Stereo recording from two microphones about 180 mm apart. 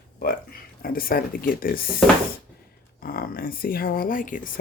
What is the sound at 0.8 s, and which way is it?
Speech, 55° left (ahead or behind).